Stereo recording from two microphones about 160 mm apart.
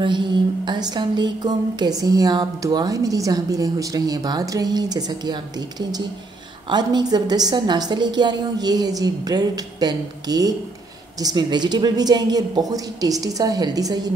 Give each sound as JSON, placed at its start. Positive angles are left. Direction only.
{"t": 0.7, "sound": "a woman's voice", "side_deg": -25}